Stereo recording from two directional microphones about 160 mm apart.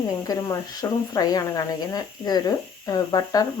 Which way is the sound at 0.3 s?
20° left (ahead or behind).